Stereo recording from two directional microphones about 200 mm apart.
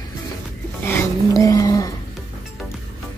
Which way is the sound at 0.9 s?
15° left (ahead or behind).